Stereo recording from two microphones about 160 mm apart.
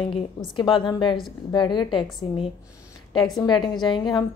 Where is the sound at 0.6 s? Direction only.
30° left (ahead or behind).